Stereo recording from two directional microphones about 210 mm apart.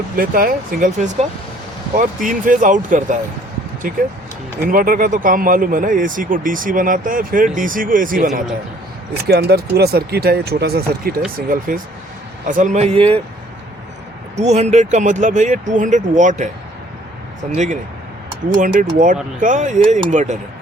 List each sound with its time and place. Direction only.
0.2 s speech: 45° right (ahead or behind); by 13.2 s 25° right (ahead or behind)
14.3 s speech: 30° right (ahead or behind)
18.5 s speech: 40° right (ahead or behind)